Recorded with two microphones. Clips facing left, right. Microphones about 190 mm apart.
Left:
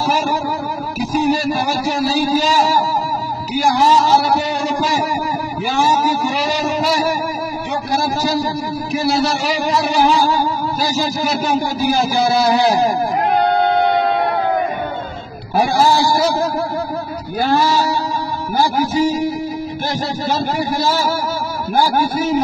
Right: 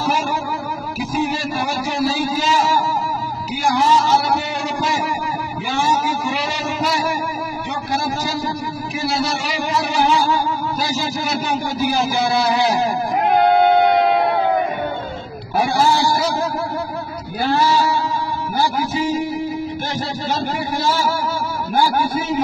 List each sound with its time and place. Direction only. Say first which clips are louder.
0.0 s music: left 3 dB; 40° left (ahead or behind)
5.7 s music: left 3 dB; 40° left (ahead or behind)
12.0 s music: left 4 dB; 35° left (ahead or behind)
13.3 s music: right 3 dB; 5° right (ahead or behind)
15.7 s music: left 2 dB; 35° left (ahead or behind)
17.4 s female singing: left 1 dB; 40° left (ahead or behind)
18.6 s music: left 5 dB; 40° left (ahead or behind)
20.2 s music: left 4 dB; 40° left (ahead or behind)